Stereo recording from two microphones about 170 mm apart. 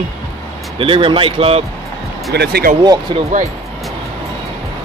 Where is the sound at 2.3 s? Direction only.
70° right (ahead or behind).